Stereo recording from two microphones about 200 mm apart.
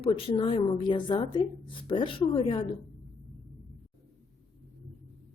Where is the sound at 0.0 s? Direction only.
25° left (ahead or behind).